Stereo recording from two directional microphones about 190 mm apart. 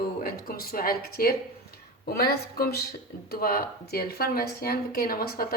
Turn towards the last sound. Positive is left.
turn(degrees=50)  # may be behind; listen again after turning